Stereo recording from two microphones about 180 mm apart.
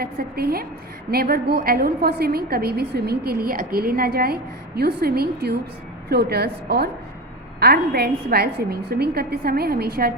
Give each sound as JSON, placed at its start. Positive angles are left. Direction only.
{"t": 0.0, "sound": "a woman's voice", "side_deg": -60}